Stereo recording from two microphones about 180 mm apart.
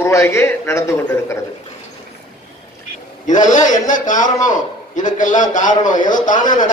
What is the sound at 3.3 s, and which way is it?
A man's voice, 45° left (ahead or behind).